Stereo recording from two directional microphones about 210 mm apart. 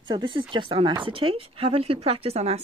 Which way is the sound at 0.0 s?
20° right (ahead or behind).